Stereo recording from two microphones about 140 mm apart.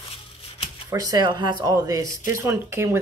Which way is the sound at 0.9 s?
25° right (ahead or behind).